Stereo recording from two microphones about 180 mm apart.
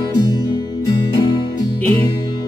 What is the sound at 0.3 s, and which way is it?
Music, 25° left (ahead or behind).